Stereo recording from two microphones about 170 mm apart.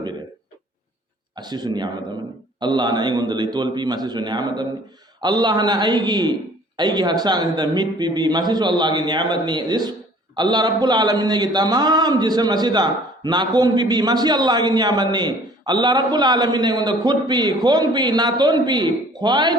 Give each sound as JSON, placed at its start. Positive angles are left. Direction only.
{"t": 1.4, "sound": "a man's voice", "side_deg": -25}